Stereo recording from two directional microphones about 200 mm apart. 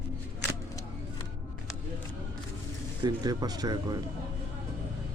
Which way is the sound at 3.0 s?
20° right (ahead or behind).